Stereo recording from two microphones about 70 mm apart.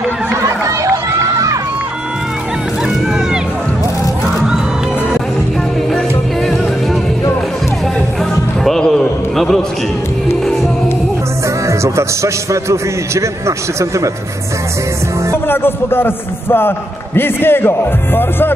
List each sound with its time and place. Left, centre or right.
0.4 s run: right
5.9 s music: centre
8.6 s a sound: centre
11.6 s a man's voice: right
15.3 s a man's voice: left